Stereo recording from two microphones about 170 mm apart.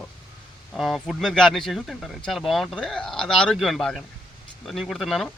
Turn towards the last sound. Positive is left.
turn(degrees=0)  # may be behind; listen again after turning